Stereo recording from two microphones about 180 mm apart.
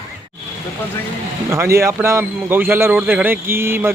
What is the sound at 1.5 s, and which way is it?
Speech, 15° right (ahead or behind).